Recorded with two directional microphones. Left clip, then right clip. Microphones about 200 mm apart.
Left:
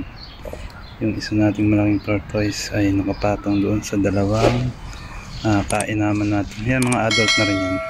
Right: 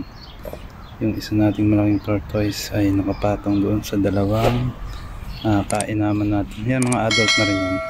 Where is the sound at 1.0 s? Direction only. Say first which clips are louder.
Even; 5° right (ahead or behind).